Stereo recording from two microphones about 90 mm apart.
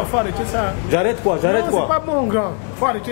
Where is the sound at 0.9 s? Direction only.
25° left (ahead or behind).